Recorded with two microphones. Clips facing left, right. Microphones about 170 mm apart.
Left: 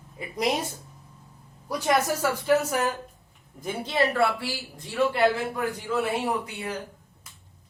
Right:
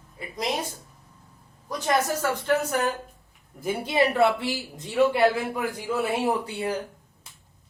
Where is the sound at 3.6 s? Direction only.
10° right (ahead or behind).